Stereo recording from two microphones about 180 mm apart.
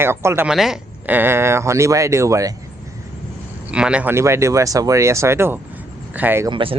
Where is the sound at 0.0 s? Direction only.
15° right (ahead or behind).